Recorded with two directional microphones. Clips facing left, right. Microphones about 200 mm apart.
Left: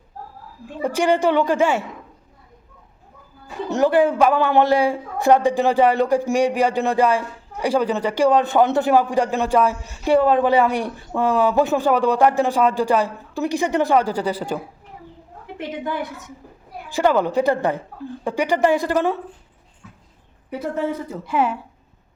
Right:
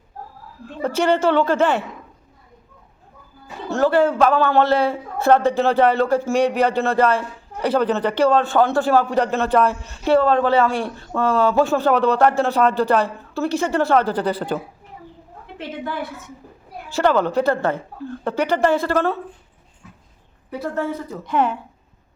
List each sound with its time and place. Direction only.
0.8 s a man's voice: 15° left (ahead or behind)
3.7 s a man's voice: 15° left (ahead or behind)
21.2 s a man's voice: 5° left (ahead or behind)